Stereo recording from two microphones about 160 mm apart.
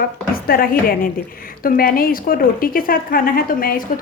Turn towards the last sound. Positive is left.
turn(degrees=65)  # may be behind; listen again after turning